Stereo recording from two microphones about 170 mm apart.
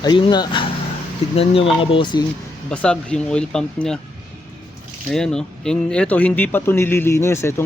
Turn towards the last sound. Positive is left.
turn(degrees=15)  # may be behind; listen again after turning